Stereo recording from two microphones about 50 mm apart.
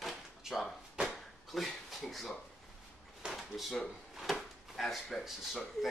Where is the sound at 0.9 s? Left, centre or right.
Centre.